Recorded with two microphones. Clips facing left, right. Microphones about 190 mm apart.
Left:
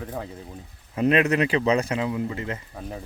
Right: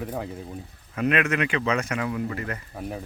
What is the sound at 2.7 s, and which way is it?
Speech, 5° right (ahead or behind).